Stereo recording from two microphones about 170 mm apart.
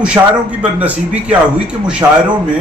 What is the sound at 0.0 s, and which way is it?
A man's voice, 5° right (ahead or behind).